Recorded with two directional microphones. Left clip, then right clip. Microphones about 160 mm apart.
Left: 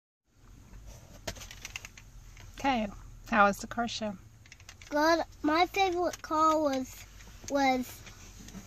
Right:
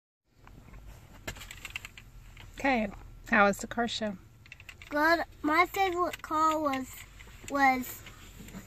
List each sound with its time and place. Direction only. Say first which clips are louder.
2.5 s speech: right 1 dB; 20° right (ahead or behind)
4.6 s a child's voice: even; centre (ahead or behind)